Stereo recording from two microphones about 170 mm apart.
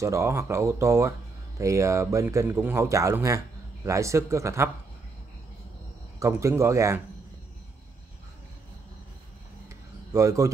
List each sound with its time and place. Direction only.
0.0 s speech: 15° right (ahead or behind)
6.1 s speech: 15° right (ahead or behind)
10.1 s a man's voice: 20° right (ahead or behind)